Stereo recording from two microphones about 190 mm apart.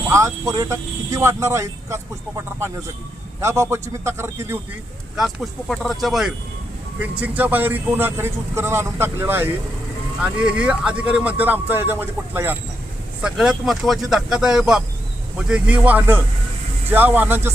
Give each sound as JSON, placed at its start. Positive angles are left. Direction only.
{"t": 0.1, "sound": "speech", "side_deg": -15}
{"t": 5.1, "sound": "speech", "side_deg": 0}